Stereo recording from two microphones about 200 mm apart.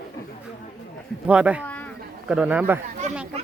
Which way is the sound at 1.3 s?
5° right (ahead or behind).